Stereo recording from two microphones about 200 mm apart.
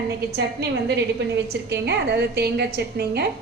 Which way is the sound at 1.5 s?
55° right (ahead or behind).